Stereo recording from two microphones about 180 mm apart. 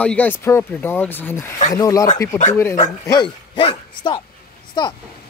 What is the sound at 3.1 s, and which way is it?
Speech, 25° left (ahead or behind).